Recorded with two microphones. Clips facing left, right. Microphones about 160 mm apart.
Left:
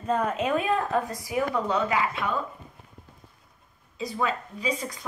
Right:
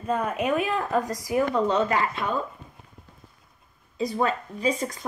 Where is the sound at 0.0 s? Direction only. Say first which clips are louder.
Left 1 dB; 10° right (ahead or behind).